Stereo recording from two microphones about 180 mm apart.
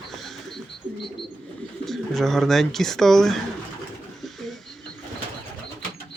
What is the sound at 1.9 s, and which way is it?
Speech, centre (ahead or behind).